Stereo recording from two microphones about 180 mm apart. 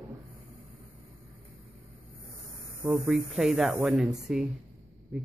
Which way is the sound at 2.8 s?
5° right (ahead or behind).